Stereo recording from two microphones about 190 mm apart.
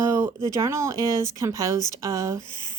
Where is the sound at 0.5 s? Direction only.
15° right (ahead or behind).